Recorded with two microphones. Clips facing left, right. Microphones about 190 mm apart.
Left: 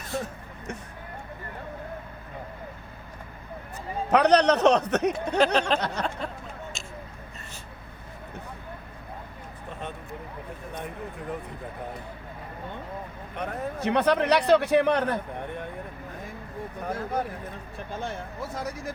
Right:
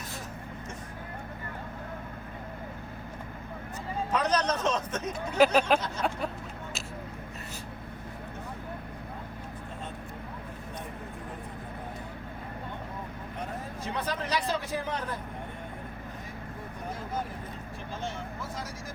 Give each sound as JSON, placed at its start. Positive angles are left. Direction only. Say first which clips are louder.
{"t": 4.1, "sound": "a man's voice", "louder": "left 9 dB", "side_deg": 70}
{"t": 5.4, "sound": "speech", "louder": "right 1 dB", "side_deg": -5}
{"t": 5.8, "sound": "a man's voice", "louder": "left 3 dB", "side_deg": 70}
{"t": 13.3, "sound": "a man's voice", "louder": "left 7 dB", "side_deg": 70}
{"t": 18.0, "sound": "speech", "louder": "left 2 dB", "side_deg": 60}